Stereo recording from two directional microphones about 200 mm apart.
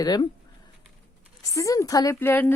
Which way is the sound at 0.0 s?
20° left (ahead or behind).